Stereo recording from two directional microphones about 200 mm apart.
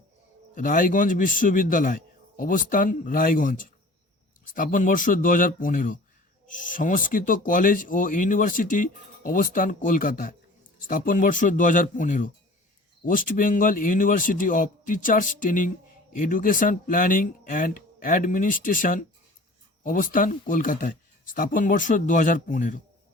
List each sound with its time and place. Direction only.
0.5 s speech: 40° left (ahead or behind)